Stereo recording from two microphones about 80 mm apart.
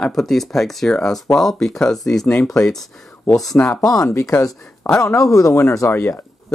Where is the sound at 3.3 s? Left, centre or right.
Left.